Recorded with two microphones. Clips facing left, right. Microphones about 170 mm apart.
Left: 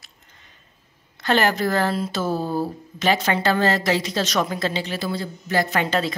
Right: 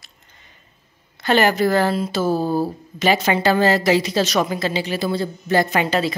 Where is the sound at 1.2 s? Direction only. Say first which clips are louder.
Right 3 dB; 5° right (ahead or behind).